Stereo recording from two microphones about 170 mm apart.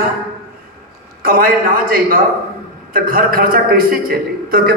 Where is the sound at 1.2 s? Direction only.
55° right (ahead or behind).